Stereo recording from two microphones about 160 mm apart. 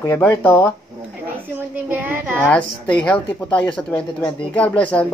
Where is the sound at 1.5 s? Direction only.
10° right (ahead or behind).